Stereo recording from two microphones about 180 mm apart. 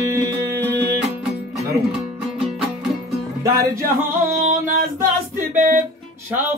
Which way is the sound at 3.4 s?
15° right (ahead or behind).